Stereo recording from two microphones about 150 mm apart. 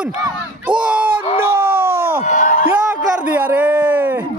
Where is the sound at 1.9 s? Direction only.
90° right.